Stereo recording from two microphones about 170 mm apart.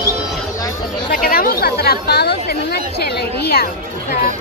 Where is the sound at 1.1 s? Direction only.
60° left (ahead or behind).